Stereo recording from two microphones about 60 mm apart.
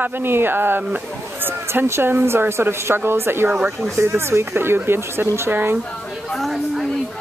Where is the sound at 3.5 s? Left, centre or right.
Right.